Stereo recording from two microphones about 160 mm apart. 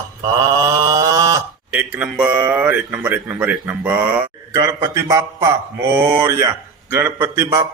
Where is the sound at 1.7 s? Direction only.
10° right (ahead or behind).